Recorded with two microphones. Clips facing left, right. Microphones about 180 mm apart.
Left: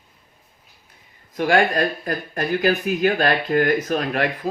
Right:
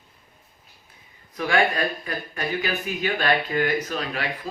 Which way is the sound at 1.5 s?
45° left (ahead or behind).